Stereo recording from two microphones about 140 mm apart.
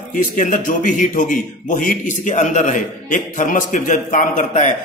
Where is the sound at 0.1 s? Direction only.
65° left (ahead or behind).